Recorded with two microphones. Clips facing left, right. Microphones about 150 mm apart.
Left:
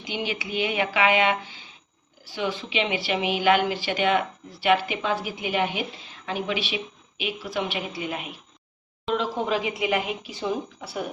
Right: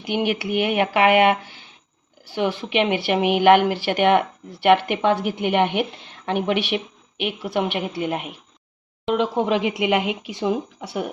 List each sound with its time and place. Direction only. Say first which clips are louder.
0.0 s a woman's voice: right 8 dB; 60° right (ahead or behind)
9.0 s speech: right 5 dB; 70° right (ahead or behind)